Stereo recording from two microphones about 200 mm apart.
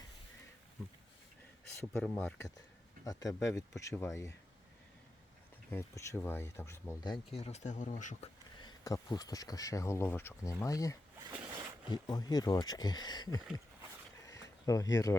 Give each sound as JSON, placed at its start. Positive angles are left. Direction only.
{"t": 1.7, "sound": "speech", "side_deg": 10}
{"t": 3.0, "sound": "speech", "side_deg": 20}
{"t": 5.7, "sound": "speech", "side_deg": 10}
{"t": 8.5, "sound": "speech", "side_deg": 20}
{"t": 11.4, "sound": "a sound", "side_deg": -20}
{"t": 11.9, "sound": "speech", "side_deg": 20}
{"t": 14.7, "sound": "speech", "side_deg": 15}